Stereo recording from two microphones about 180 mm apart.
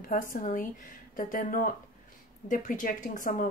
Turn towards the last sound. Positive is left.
turn(degrees=50)  # may be behind; listen again after turning